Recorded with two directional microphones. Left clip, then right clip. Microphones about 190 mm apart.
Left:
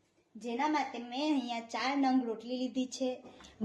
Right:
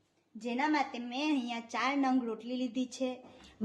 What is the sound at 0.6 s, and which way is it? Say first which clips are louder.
A woman's voice: right 1 dB; 40° right (ahead or behind).